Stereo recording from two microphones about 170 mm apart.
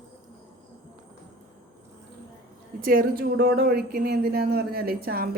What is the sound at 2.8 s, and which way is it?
Speech, 60° right (ahead or behind).